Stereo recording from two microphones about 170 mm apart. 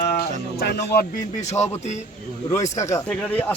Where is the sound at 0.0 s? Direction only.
70° left (ahead or behind).